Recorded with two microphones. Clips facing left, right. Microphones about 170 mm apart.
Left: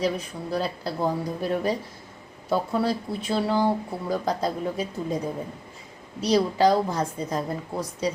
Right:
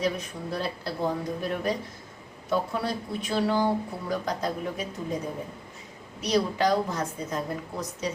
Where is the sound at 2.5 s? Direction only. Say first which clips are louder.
Left 4 dB; 30° left (ahead or behind).